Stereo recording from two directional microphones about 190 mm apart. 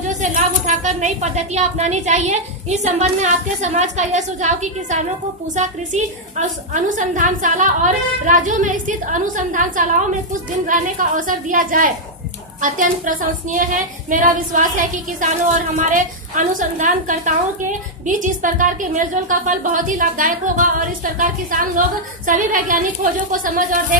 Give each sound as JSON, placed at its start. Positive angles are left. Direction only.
{"t": 0.0, "sound": "a woman's voice", "side_deg": -40}
{"t": 5.6, "sound": "a woman's voice", "side_deg": -40}